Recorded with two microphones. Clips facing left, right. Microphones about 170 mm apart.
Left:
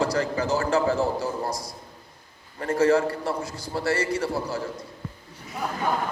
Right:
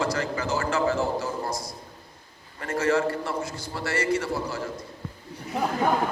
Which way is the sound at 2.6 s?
35° left (ahead or behind).